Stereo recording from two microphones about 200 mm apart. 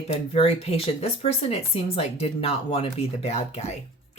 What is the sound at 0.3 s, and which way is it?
Speech, 30° left (ahead or behind).